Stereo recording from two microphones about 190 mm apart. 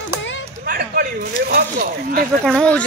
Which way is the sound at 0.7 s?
50° right (ahead or behind).